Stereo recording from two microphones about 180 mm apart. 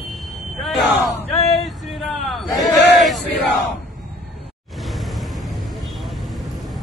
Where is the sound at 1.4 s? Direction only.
35° left (ahead or behind).